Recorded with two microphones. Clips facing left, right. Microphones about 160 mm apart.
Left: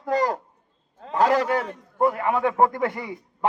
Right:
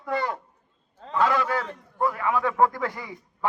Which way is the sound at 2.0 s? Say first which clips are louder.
Left 3 dB; 25° left (ahead or behind).